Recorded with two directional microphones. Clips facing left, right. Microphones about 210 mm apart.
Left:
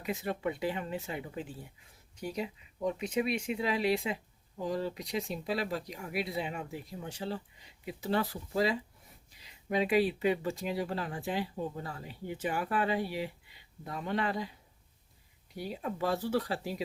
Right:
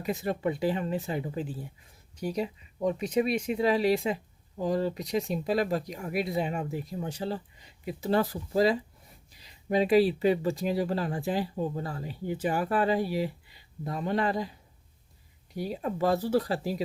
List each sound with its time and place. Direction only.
0.0 s speech: 40° right (ahead or behind)
15.5 s speech: 40° right (ahead or behind)